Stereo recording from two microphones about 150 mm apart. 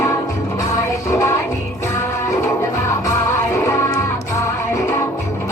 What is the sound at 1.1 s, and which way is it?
Music, 20° left (ahead or behind).